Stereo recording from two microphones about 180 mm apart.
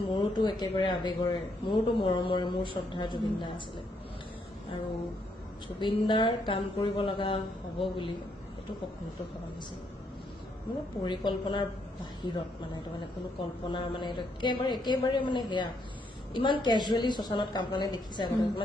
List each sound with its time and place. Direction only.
0.2 s a man's voice: 25° left (ahead or behind)
5.8 s a man's voice: 25° left (ahead or behind)
11.0 s a man's voice: 25° left (ahead or behind)